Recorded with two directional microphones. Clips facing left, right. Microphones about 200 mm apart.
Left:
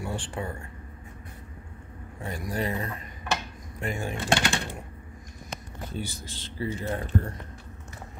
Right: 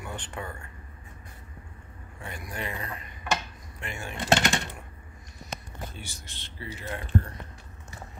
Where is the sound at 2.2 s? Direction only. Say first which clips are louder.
Left 6 dB; 40° left (ahead or behind).